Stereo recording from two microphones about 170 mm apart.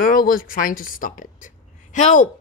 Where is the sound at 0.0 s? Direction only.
55° left (ahead or behind).